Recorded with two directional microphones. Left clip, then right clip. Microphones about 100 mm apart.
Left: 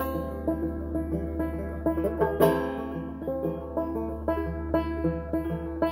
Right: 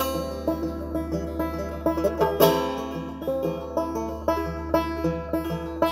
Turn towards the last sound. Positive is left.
turn(degrees=-30)  # may be behind; listen again after turning